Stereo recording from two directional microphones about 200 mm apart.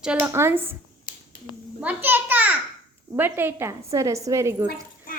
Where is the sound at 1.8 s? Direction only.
10° right (ahead or behind).